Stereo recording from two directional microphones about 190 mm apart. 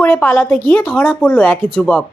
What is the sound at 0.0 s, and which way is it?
A woman's voice, 10° left (ahead or behind).